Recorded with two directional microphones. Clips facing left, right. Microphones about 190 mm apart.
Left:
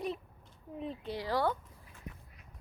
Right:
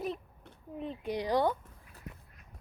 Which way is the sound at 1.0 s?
15° right (ahead or behind).